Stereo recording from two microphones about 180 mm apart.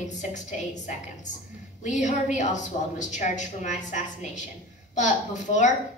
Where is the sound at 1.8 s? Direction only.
40° left (ahead or behind).